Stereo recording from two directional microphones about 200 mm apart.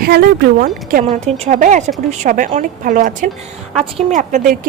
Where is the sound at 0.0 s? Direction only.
50° right (ahead or behind).